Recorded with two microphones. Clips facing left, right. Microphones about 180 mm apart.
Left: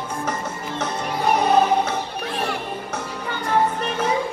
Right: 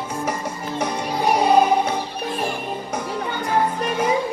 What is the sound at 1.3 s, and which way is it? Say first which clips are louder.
Music: right 2 dB; 10° right (ahead or behind).